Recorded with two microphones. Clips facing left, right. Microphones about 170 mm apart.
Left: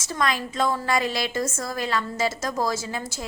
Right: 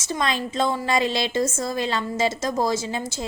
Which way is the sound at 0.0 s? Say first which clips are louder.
Right 1 dB; 25° right (ahead or behind).